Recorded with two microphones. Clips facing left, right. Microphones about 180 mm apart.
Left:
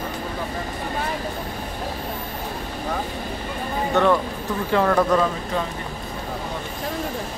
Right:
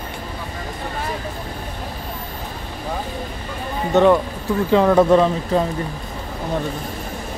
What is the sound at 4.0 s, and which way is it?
Speech, 20° right (ahead or behind).